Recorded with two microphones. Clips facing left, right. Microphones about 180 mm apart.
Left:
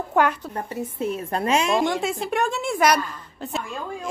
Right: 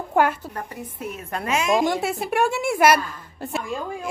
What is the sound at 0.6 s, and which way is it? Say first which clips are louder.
A woman's voice: left 5 dB; 30° left (ahead or behind).